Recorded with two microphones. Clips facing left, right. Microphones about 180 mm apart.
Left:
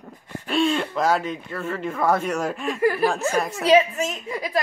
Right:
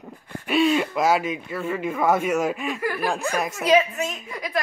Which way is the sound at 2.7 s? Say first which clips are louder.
Left 6 dB; 30° left (ahead or behind).